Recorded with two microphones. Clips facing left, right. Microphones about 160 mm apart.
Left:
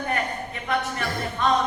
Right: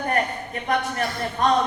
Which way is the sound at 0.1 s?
45° right (ahead or behind).